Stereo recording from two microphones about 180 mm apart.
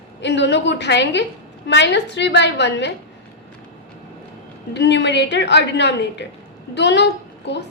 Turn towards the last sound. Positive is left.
turn(degrees=75)  # may be behind; listen again after turning